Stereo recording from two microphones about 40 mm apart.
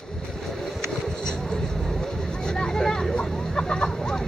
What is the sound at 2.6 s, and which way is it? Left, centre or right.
Vehicle, centre.